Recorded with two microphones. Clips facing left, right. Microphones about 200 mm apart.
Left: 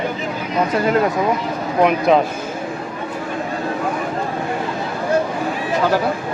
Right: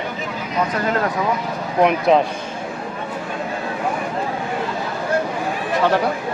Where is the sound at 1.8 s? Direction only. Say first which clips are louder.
Left 1 dB; centre (ahead or behind).